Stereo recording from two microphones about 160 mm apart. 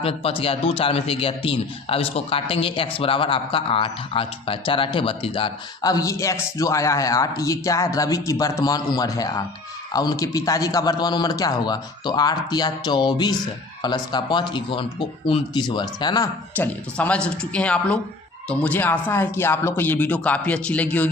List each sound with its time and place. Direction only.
0.0 s a man's voice: 35° left (ahead or behind)
16.6 s speech: 10° left (ahead or behind)